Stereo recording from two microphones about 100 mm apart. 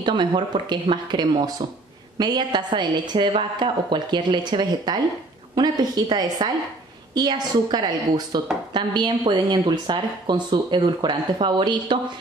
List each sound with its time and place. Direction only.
0.0 s a woman's voice: 50° right (ahead or behind)